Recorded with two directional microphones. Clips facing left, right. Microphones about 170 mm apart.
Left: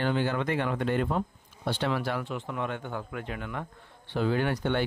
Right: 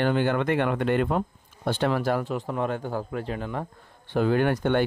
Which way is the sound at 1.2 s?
50° right (ahead or behind).